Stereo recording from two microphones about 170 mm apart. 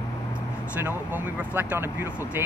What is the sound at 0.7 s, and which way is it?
Speech, 10° right (ahead or behind).